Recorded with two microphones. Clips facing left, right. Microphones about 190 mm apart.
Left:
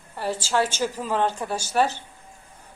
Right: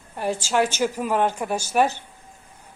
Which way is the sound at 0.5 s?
15° right (ahead or behind).